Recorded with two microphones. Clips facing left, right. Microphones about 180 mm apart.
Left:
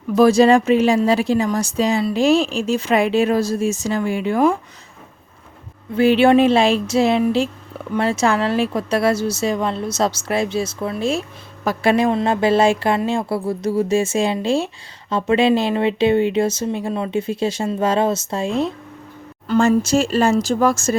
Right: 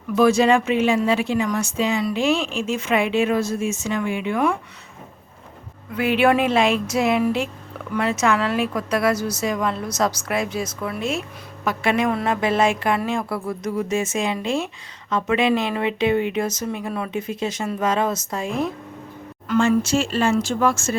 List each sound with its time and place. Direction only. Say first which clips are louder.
0.2 s speech: left 4 dB; 35° left (ahead or behind)
5.9 s a woman's voice: left 5 dB; 30° left (ahead or behind)
19.5 s speech: left 3 dB; 40° left (ahead or behind)